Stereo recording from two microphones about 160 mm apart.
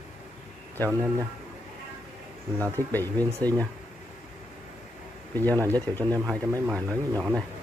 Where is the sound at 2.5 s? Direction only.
20° right (ahead or behind).